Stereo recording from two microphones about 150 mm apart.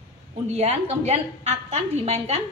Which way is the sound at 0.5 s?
50° right (ahead or behind).